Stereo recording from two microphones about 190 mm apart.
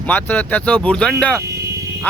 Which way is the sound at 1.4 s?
15° right (ahead or behind).